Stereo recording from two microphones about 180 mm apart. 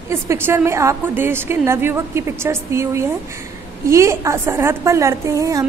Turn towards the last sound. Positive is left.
turn(degrees=-20)  # may be behind; listen again after turning